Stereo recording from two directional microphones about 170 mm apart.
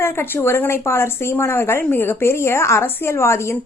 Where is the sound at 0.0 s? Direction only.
15° left (ahead or behind).